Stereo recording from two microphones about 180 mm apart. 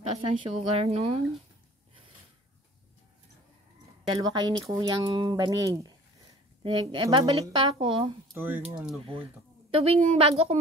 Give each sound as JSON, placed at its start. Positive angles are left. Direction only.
{"t": 0.1, "sound": "a woman's voice", "side_deg": -35}
{"t": 4.1, "sound": "a woman's voice", "side_deg": -25}
{"t": 8.4, "sound": "speech", "side_deg": -10}
{"t": 9.8, "sound": "a woman's voice", "side_deg": -35}